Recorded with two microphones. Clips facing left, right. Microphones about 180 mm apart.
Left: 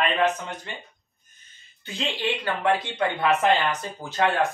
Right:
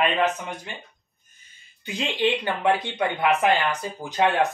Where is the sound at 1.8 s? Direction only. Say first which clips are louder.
Right 5 dB; 15° right (ahead or behind).